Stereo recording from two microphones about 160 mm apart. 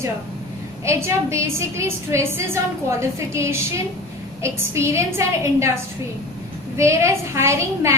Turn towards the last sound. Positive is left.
turn(degrees=-15)  # may be behind; listen again after turning